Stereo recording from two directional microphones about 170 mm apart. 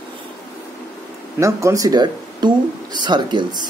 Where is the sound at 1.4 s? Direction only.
20° right (ahead or behind).